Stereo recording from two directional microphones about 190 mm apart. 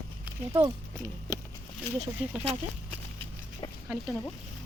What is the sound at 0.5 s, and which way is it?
Speech, 20° right (ahead or behind).